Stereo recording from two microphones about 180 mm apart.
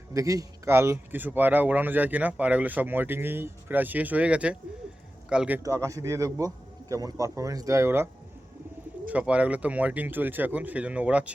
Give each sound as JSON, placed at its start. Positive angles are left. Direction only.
{"t": 0.1, "sound": "speech", "side_deg": -20}
{"t": 5.6, "sound": "speech", "side_deg": -15}
{"t": 9.0, "sound": "speech", "side_deg": -5}